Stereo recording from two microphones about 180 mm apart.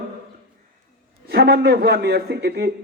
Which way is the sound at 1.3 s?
60° right (ahead or behind).